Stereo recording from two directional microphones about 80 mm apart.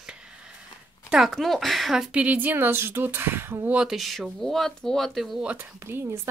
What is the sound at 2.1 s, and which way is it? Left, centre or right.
Speech, centre.